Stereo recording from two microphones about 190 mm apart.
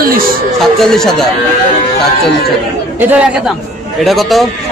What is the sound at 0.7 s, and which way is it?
Speech, centre (ahead or behind).